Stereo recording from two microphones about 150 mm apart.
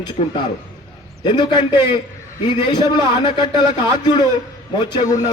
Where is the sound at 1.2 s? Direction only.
30° left (ahead or behind).